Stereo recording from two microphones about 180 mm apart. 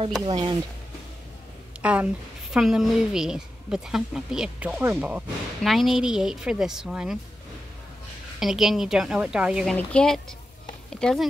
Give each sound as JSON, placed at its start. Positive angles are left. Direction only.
{"t": 0.3, "sound": "speech", "side_deg": -30}
{"t": 1.8, "sound": "a woman's voice", "side_deg": -5}
{"t": 8.4, "sound": "speech", "side_deg": 0}